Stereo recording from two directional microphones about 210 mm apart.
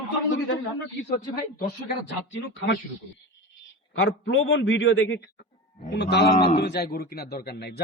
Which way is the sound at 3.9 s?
70° left (ahead or behind).